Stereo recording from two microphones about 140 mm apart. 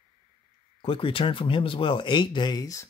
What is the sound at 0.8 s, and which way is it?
Speech, 40° left (ahead or behind).